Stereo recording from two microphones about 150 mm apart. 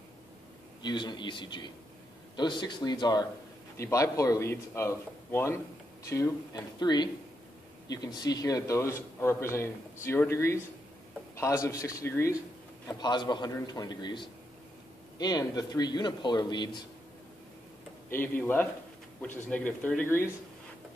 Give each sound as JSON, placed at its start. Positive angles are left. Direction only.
{"t": 0.8, "sound": "a man's voice", "side_deg": 30}
{"t": 18.1, "sound": "speech", "side_deg": 15}